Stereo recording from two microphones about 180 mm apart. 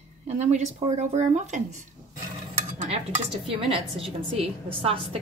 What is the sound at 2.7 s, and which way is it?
Stir, 40° right (ahead or behind).